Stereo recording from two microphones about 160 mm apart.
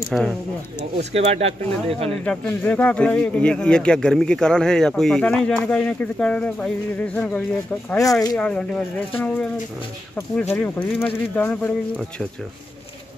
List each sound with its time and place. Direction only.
0.1 s speech: centre (ahead or behind)
1.1 s speech: 40° right (ahead or behind)
2.2 s speech: 10° left (ahead or behind)